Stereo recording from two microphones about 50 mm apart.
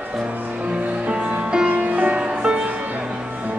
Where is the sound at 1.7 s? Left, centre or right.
Right.